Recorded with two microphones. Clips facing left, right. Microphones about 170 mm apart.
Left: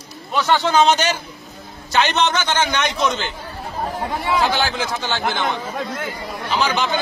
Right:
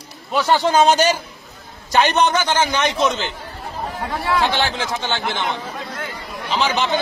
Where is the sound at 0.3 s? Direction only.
10° right (ahead or behind).